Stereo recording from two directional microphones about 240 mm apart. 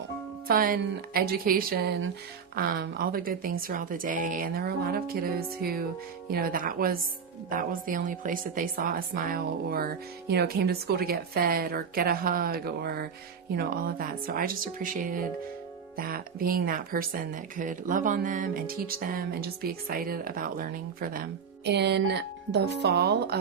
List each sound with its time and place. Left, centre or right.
0.4 s speech: right